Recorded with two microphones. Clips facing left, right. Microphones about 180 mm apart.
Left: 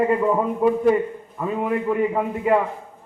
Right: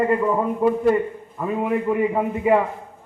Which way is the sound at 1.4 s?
5° right (ahead or behind).